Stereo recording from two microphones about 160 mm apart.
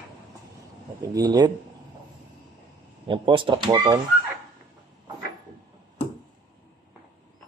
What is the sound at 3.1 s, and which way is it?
Speech, 30° right (ahead or behind).